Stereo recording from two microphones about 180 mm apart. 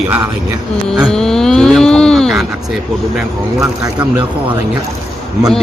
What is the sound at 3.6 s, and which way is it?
Speech, 20° right (ahead or behind).